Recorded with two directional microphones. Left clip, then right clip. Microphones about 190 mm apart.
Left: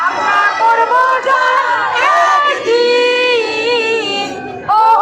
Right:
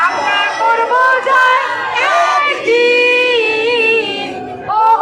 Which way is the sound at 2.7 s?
5° left (ahead or behind).